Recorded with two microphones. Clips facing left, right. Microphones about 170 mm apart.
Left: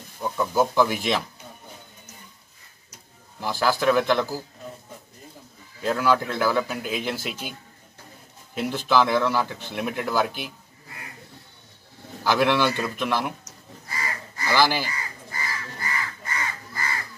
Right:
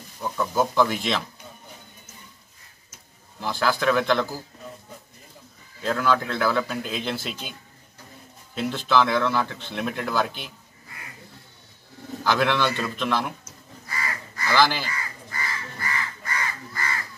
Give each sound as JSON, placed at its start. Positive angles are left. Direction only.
{"t": 0.2, "sound": "speech", "side_deg": 10}
{"t": 3.3, "sound": "speech", "side_deg": 5}
{"t": 5.8, "sound": "speech", "side_deg": 10}
{"t": 8.5, "sound": "speech", "side_deg": 10}
{"t": 12.2, "sound": "speech", "side_deg": 10}
{"t": 13.9, "sound": "crow", "side_deg": 25}
{"t": 14.5, "sound": "speech", "side_deg": 10}
{"t": 14.9, "sound": "crow", "side_deg": 25}